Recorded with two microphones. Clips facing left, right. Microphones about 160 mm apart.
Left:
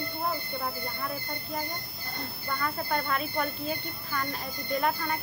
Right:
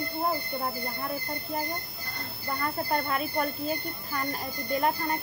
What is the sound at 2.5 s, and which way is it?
Speech, 35° right (ahead or behind).